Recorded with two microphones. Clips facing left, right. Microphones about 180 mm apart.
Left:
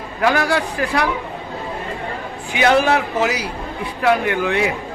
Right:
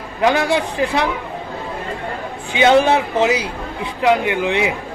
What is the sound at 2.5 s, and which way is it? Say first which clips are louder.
A man's voice: right 2 dB; 25° right (ahead or behind).